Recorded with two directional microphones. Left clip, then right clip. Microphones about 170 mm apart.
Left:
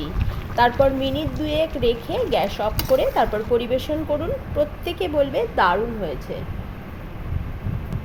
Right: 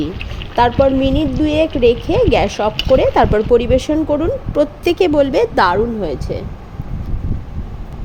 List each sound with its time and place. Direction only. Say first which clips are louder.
0.5 s speech: right 5 dB; 50° right (ahead or behind)